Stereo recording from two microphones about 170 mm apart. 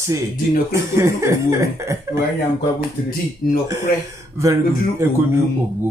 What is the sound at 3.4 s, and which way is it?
Speech, 60° left (ahead or behind).